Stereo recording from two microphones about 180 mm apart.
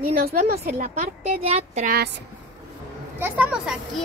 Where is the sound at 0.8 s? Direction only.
40° right (ahead or behind).